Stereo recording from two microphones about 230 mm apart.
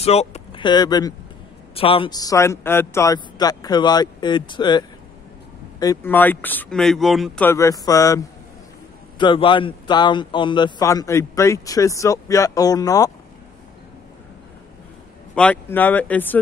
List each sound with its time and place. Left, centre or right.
0.0 s a man's voice: left
9.2 s a man's voice: left
15.3 s a man's voice: centre